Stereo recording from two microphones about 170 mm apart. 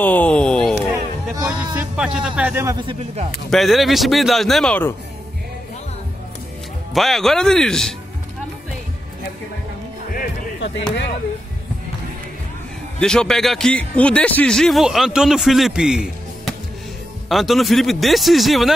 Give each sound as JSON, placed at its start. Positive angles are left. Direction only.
{"t": 0.0, "sound": "a sound", "side_deg": 10}
{"t": 1.3, "sound": "speech", "side_deg": -20}
{"t": 1.6, "sound": "speech", "side_deg": -5}
{"t": 3.4, "sound": "a man's voice", "side_deg": 0}
{"t": 6.9, "sound": "a man's voice", "side_deg": 0}
{"t": 10.1, "sound": "music", "side_deg": 75}
{"t": 13.0, "sound": "a man's voice", "side_deg": 5}